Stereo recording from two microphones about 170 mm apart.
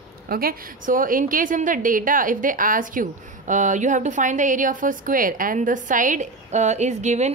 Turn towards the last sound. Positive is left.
turn(degrees=-40)  # may be behind; listen again after turning